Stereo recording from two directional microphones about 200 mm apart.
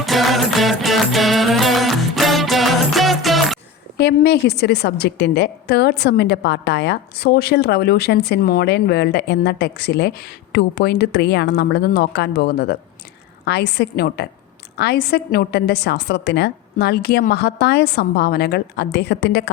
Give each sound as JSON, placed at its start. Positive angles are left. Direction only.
{"t": 0.0, "sound": "music", "side_deg": 0}
{"t": 3.9, "sound": "a woman's voice", "side_deg": 55}